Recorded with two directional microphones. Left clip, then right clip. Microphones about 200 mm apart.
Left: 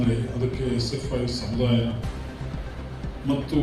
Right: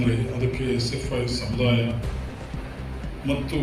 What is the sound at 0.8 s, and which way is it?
Speech, 60° left (ahead or behind).